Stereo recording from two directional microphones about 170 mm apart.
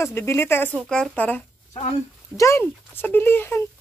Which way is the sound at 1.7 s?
40° left (ahead or behind).